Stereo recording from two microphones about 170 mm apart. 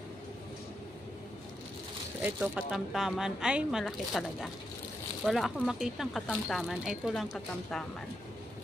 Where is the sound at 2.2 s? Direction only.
5° right (ahead or behind).